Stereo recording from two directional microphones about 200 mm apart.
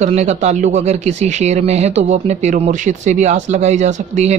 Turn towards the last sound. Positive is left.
turn(degrees=-35)  # may be behind; listen again after turning